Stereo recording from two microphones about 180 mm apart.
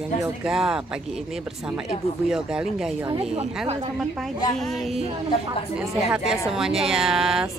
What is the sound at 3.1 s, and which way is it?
Speech, 35° right (ahead or behind).